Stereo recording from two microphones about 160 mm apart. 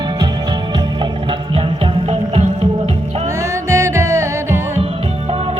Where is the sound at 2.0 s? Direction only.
40° right (ahead or behind).